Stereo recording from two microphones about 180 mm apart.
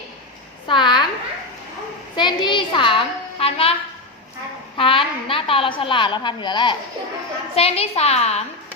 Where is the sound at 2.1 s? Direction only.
25° left (ahead or behind).